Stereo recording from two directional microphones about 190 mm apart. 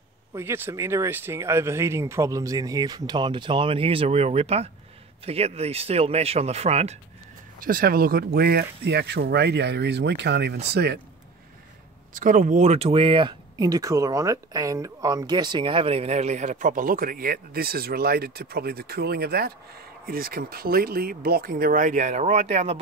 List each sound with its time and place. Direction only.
0.3 s speech: 15° right (ahead or behind); by 7.0 s 35° right (ahead or behind)
7.6 s speech: 50° right (ahead or behind)
12.1 s speech: 45° right (ahead or behind)